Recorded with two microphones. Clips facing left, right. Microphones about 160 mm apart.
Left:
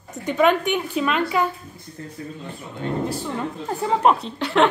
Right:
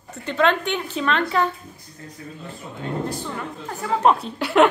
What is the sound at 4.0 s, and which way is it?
Speech, centre (ahead or behind).